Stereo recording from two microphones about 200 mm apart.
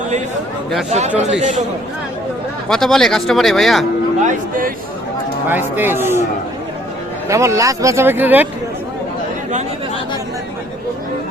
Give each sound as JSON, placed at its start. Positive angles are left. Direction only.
{"t": 0.9, "sound": "speech", "side_deg": -35}
{"t": 2.6, "sound": "speech", "side_deg": 0}
{"t": 4.2, "sound": "speech", "side_deg": -40}
{"t": 5.5, "sound": "speech", "side_deg": -10}
{"t": 7.3, "sound": "speech", "side_deg": -15}